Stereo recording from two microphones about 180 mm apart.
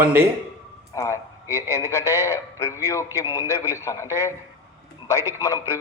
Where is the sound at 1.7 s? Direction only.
15° left (ahead or behind).